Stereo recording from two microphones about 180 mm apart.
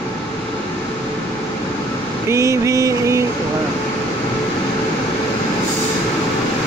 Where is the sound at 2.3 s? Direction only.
15° right (ahead or behind).